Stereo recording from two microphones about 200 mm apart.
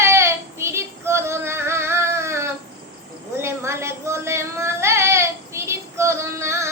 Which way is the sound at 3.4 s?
15° right (ahead or behind).